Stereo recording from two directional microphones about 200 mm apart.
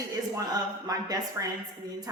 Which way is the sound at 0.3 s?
20° right (ahead or behind).